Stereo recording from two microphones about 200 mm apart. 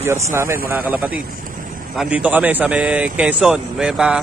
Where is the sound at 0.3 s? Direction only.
15° right (ahead or behind).